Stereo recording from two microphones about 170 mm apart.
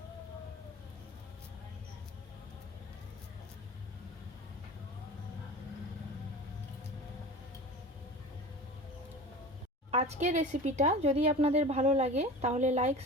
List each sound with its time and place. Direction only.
9.9 s speech: 40° right (ahead or behind)